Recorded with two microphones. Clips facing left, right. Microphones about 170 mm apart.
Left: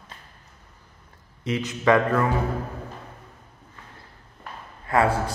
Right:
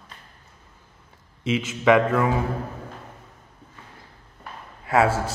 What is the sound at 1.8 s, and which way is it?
Speech, 10° right (ahead or behind).